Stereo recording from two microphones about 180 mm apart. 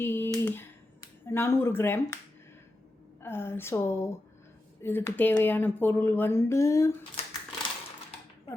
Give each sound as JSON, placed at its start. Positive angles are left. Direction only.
{"t": 0.0, "sound": "a sound", "side_deg": 15}
{"t": 3.2, "sound": "speech", "side_deg": 15}
{"t": 7.2, "sound": "typewriter", "side_deg": 35}